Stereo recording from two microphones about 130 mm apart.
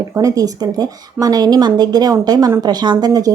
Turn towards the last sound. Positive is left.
turn(degrees=-30)  # may be behind; listen again after turning